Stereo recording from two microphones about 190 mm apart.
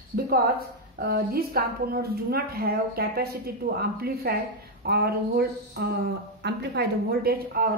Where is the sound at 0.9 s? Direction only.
55° right (ahead or behind).